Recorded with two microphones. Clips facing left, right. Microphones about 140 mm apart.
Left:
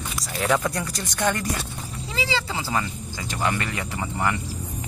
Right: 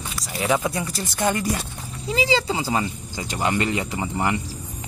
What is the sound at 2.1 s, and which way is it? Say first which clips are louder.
Speech: right 6 dB; 15° right (ahead or behind).